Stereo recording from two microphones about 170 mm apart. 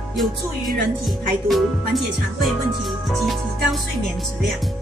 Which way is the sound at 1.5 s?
Centre (ahead or behind).